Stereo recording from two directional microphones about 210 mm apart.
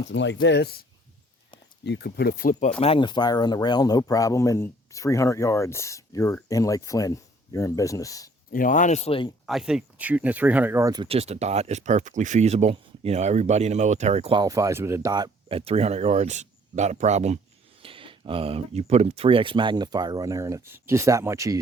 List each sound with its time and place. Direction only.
0.1 s speech: 60° left (ahead or behind); by 2.7 s 40° left (ahead or behind)
2.8 s speech: 25° left (ahead or behind)
8.5 s speech: 40° left (ahead or behind)
9.5 s speech: centre (ahead or behind)